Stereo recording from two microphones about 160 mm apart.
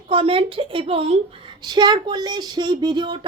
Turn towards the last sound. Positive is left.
turn(degrees=-30)  # may be behind; listen again after turning